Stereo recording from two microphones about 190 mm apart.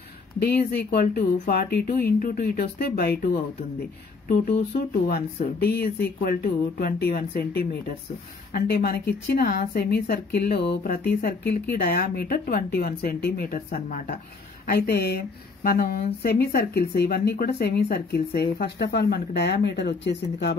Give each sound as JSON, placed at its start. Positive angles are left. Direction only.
{"t": 0.4, "sound": "speech", "side_deg": 55}
{"t": 4.6, "sound": "speech", "side_deg": 45}